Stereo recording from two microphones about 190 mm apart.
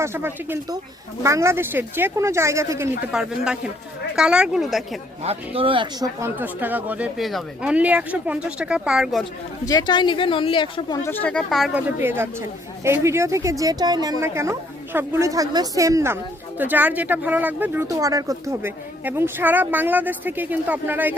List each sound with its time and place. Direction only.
0.0 s speech: 15° right (ahead or behind)
3.1 s speech: 5° right (ahead or behind)
5.2 s speech: 30° right (ahead or behind); by 9.2 s 5° right (ahead or behind)
9.6 s speech: 20° left (ahead or behind)
11.1 s speech: 5° left (ahead or behind)
12.0 s speech: 10° right (ahead or behind)